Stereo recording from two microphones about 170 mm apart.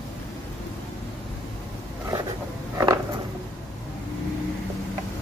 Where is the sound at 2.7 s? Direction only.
20° right (ahead or behind).